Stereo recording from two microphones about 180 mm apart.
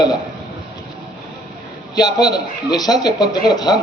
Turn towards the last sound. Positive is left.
turn(degrees=20)  # may be behind; listen again after turning